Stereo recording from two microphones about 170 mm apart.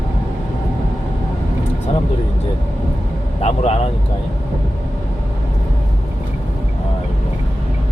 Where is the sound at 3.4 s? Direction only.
40° left (ahead or behind).